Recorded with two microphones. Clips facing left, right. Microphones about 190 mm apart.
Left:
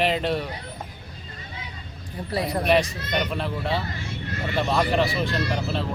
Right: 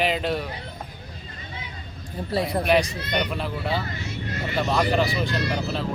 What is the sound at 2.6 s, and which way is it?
Speech, centre (ahead or behind).